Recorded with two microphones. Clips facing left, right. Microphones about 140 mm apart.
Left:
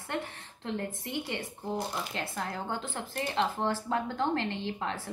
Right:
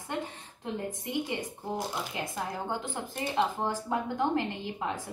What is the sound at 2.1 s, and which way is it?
A woman's voice, 15° right (ahead or behind).